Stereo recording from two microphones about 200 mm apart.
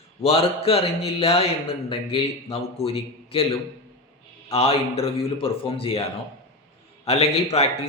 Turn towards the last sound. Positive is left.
turn(degrees=30)  # may be behind; listen again after turning